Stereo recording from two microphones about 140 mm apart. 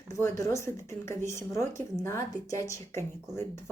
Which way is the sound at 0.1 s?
20° left (ahead or behind).